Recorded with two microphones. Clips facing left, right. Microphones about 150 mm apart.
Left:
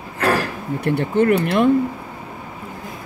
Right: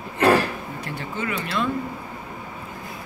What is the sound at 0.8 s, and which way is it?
Speech, 60° left (ahead or behind).